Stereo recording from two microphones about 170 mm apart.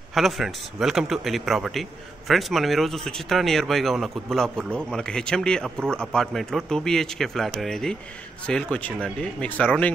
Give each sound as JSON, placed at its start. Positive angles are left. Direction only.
{"t": 0.1, "sound": "a man's voice", "side_deg": 0}